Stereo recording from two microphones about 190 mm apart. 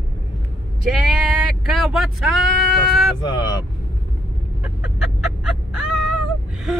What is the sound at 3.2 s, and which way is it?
Speech, 25° left (ahead or behind).